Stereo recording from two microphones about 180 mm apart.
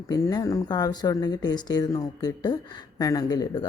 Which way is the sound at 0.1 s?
20° left (ahead or behind).